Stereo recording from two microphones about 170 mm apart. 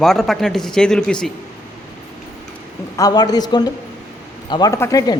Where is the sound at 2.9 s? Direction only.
20° left (ahead or behind).